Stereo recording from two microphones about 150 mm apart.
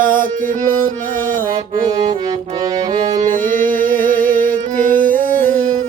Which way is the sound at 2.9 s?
55° right (ahead or behind).